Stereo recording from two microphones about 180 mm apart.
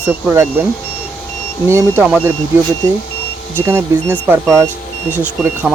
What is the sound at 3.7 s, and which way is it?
Speech, 15° right (ahead or behind).